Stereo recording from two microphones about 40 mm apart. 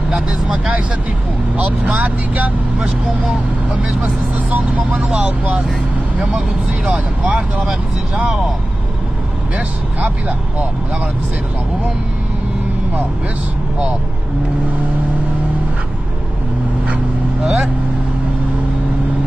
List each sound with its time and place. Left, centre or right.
0.1 s speech: right
2.0 s speech: right
4.0 s speech: right
6.1 s speech: right
17.4 s speech: centre